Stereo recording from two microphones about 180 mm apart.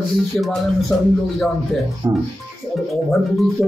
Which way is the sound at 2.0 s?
20° right (ahead or behind).